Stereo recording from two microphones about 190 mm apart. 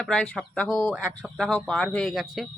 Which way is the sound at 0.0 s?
5° left (ahead or behind).